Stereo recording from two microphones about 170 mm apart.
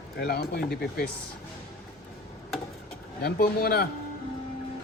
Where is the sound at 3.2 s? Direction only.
65° left (ahead or behind).